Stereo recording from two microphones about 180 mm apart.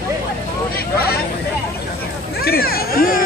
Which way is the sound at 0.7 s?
60° left (ahead or behind).